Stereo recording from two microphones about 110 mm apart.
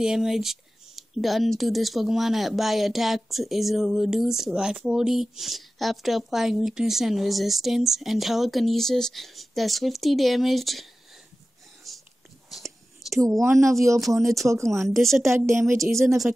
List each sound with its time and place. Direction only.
0.0 s speech: 5° right (ahead or behind)
11.9 s whispering: centre (ahead or behind)
13.4 s speech: 25° right (ahead or behind)
14.0 s speech: centre (ahead or behind)
14.4 s speech: 25° right (ahead or behind)
14.9 s speech: centre (ahead or behind)
15.2 s speech: 25° right (ahead or behind)